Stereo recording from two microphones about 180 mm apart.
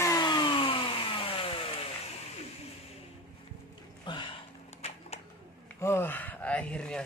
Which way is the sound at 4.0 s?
25° left (ahead or behind).